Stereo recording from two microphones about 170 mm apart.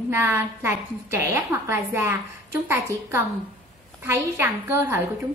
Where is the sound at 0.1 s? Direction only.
15° right (ahead or behind).